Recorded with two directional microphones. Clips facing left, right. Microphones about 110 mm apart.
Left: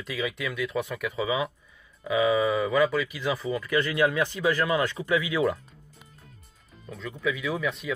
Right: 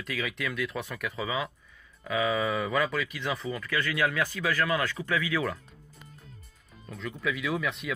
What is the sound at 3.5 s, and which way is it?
A man's voice, 15° left (ahead or behind).